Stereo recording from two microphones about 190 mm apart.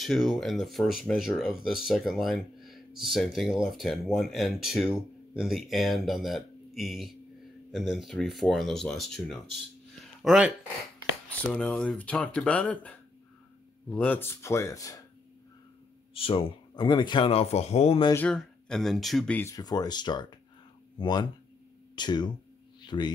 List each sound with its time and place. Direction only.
0.0 s speech: centre (ahead or behind)
11.4 s speech: 5° left (ahead or behind)
16.2 s speech: 25° left (ahead or behind)
18.1 s speech: 5° left (ahead or behind); by 22.3 s 25° left (ahead or behind)
22.8 s a sound: 25° left (ahead or behind)